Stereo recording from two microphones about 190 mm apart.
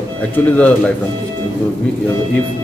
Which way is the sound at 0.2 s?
10° left (ahead or behind).